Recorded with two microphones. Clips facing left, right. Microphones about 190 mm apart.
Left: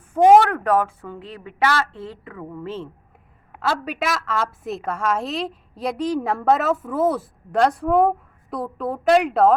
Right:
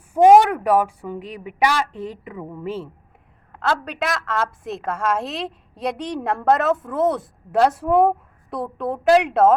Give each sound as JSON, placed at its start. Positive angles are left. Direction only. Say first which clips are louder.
{"t": 0.1, "sound": "speech", "louder": "right 1 dB", "side_deg": -10}
{"t": 3.5, "sound": "a woman's voice", "louder": "right 1 dB", "side_deg": 5}